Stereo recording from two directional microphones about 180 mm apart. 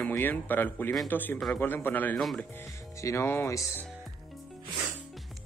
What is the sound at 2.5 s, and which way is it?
Speech, 15° left (ahead or behind).